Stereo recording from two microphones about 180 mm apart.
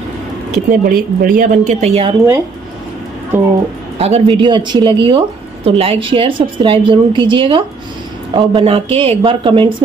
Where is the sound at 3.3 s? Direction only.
10° right (ahead or behind).